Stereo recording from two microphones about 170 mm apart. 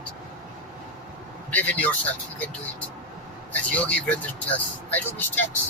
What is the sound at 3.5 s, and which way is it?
Speech, 10° left (ahead or behind).